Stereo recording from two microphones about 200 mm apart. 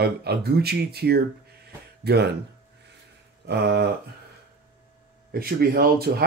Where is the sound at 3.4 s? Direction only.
55° right (ahead or behind).